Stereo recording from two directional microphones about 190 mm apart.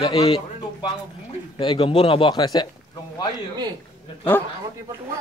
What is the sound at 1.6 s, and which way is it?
A man's voice, 25° left (ahead or behind).